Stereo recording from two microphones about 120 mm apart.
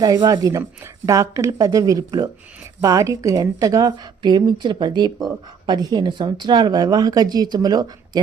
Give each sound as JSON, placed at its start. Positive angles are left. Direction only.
{"t": 0.0, "sound": "a woman's voice", "side_deg": -35}